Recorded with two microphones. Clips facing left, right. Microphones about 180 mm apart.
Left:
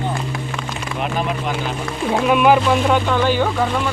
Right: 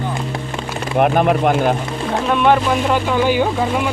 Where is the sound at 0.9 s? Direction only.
55° right (ahead or behind).